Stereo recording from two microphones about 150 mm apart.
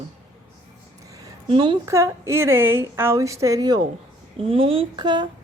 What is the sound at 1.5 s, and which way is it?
Speech, 35° right (ahead or behind).